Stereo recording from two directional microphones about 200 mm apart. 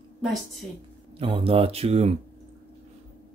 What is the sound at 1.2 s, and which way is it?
Speech, 30° right (ahead or behind).